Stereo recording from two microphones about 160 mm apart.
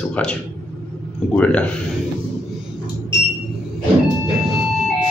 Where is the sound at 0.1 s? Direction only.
5° left (ahead or behind).